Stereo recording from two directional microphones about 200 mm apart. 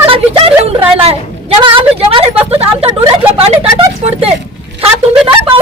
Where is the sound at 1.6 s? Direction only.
25° right (ahead or behind).